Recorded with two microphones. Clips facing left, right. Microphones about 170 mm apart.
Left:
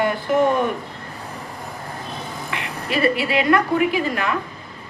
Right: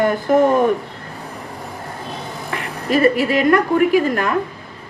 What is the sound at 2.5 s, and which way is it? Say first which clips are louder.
Speech: right 6 dB; 45° right (ahead or behind).